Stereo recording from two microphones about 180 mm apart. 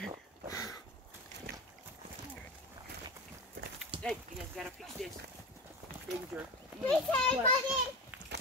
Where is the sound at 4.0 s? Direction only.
Centre (ahead or behind).